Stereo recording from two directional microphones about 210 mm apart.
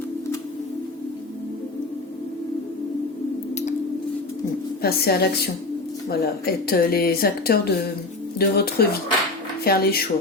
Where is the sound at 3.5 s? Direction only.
35° left (ahead or behind).